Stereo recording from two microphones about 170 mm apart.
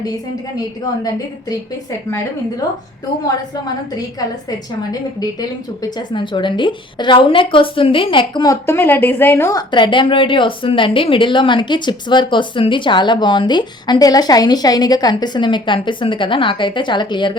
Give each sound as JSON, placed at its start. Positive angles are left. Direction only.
{"t": 5.4, "sound": "a woman's voice", "side_deg": 25}
{"t": 8.6, "sound": "a woman's voice", "side_deg": 15}